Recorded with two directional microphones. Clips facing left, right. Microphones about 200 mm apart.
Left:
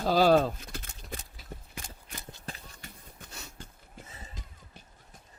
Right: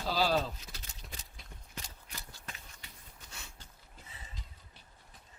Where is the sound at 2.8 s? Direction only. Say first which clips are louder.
Left 6 dB; 45° left (ahead or behind).